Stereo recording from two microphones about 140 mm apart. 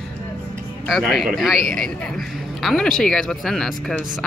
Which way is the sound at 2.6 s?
5° left (ahead or behind).